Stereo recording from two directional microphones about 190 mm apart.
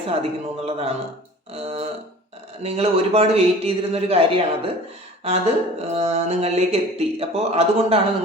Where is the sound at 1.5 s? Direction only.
30° right (ahead or behind).